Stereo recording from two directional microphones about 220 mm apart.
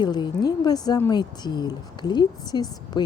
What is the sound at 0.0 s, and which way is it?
Speech, 20° left (ahead or behind).